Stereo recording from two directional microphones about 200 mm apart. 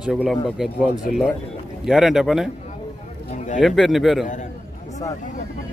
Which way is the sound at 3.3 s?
40° left (ahead or behind).